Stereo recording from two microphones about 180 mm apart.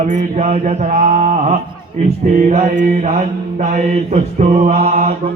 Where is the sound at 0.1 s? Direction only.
40° right (ahead or behind).